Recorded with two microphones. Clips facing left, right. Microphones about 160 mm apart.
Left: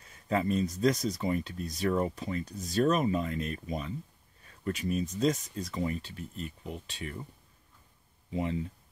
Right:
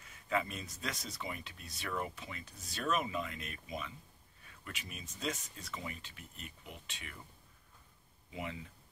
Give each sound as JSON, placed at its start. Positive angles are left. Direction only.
{"t": 0.1, "sound": "speech", "side_deg": 35}
{"t": 8.3, "sound": "speech", "side_deg": 35}